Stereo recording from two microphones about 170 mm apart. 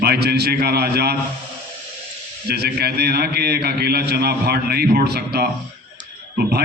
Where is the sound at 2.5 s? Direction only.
70° right (ahead or behind).